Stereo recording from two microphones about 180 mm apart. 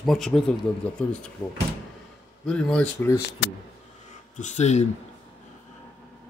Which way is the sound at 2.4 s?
5° left (ahead or behind).